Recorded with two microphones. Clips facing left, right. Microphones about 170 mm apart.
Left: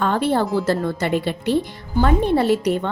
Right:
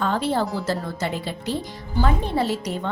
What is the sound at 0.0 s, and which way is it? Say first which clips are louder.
A woman's voice: left 3 dB; 60° left (ahead or behind).